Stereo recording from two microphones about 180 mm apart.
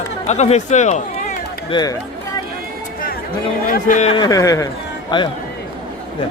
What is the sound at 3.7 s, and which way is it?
Speech, 45° left (ahead or behind).